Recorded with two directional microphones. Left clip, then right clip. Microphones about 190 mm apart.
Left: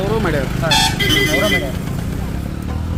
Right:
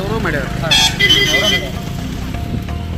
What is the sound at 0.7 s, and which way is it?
Speech, 50° left (ahead or behind).